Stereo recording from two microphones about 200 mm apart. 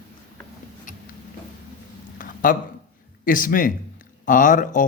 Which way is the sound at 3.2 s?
45° left (ahead or behind).